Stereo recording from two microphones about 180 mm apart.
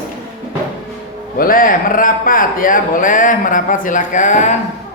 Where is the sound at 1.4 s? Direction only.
50° left (ahead or behind).